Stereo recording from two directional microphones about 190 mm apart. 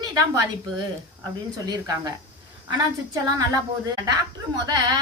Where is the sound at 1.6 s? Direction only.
20° right (ahead or behind).